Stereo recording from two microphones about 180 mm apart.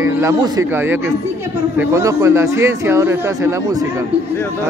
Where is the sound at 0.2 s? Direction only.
15° right (ahead or behind).